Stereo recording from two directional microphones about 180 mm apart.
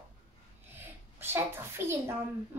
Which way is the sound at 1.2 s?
15° right (ahead or behind).